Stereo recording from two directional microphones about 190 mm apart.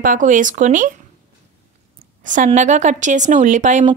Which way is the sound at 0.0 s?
45° right (ahead or behind).